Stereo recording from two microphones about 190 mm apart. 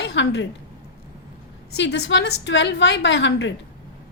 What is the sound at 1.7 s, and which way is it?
A woman's voice, 65° left (ahead or behind).